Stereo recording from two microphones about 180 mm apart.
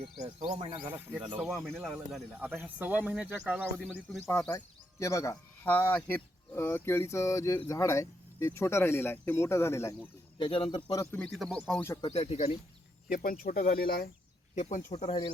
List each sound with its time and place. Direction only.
0.2 s speech: 25° right (ahead or behind)
1.4 s speech: centre (ahead or behind)
4.3 s speech: 10° left (ahead or behind)
10.3 s speech: 30° left (ahead or behind)
11.0 s speech: 10° left (ahead or behind)
12.0 s speech: 35° left (ahead or behind)
13.1 s speech: 50° left (ahead or behind)
14.5 s speech: 45° left (ahead or behind)